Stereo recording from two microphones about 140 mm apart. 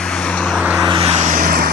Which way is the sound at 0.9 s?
35° right (ahead or behind).